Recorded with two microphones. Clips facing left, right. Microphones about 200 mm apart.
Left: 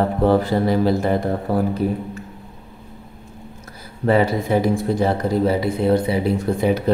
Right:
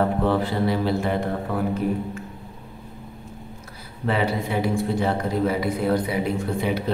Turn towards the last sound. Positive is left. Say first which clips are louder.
# left 5 dB
turn(degrees=45)  # may be behind; listen again after turning